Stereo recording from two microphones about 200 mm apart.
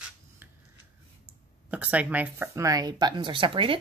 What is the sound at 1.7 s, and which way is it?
Speech, 5° right (ahead or behind).